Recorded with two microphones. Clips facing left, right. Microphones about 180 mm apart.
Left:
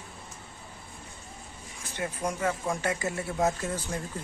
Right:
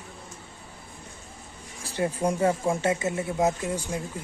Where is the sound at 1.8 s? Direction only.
30° right (ahead or behind); by 4.0 s 15° right (ahead or behind).